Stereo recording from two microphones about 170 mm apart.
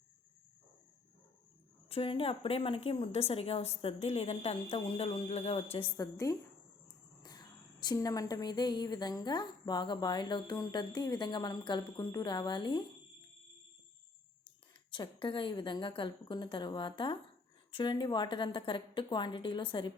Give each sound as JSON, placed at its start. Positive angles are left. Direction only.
{"t": 1.9, "sound": "a woman's voice", "side_deg": 35}
{"t": 6.0, "sound": "a woman's voice", "side_deg": 20}
{"t": 14.8, "sound": "a woman's voice", "side_deg": 30}